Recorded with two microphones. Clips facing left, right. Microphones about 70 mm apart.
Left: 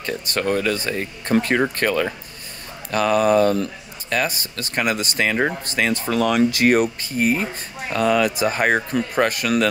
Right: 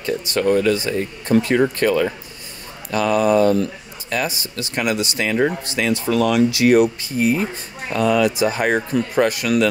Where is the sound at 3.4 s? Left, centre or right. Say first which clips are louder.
Right 2 dB; right.